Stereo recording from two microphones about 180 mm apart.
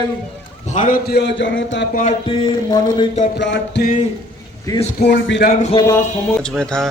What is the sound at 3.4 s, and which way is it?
Speech, 80° left.